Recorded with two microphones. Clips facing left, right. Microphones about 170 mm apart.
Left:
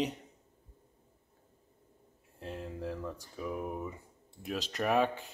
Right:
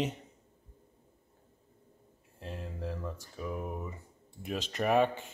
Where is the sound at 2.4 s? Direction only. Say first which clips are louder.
Left 1 dB; 5° left (ahead or behind).